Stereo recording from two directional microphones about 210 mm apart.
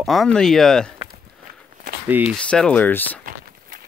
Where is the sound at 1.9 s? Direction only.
40° right (ahead or behind).